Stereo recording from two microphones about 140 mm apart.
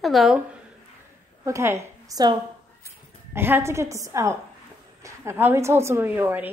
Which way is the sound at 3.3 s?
15° right (ahead or behind).